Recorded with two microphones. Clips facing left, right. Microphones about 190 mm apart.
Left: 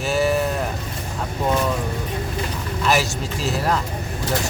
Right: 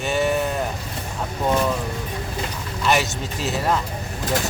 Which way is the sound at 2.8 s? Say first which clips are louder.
Even; centre (ahead or behind).